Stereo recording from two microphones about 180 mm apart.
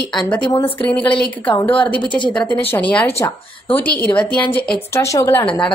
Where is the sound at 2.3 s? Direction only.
10° left (ahead or behind).